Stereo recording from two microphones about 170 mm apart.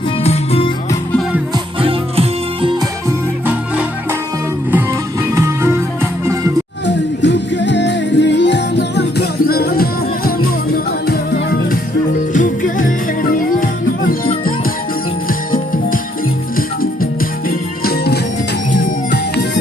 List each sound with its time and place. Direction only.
0.2 s music: 35° left (ahead or behind)
1.8 s music: 30° right (ahead or behind)
4.7 s music: 15° right (ahead or behind)
6.8 s music: 90° left; by 11.8 s 65° left (ahead or behind)
12.3 s music: 50° left (ahead or behind)
14.1 s music: 55° left (ahead or behind)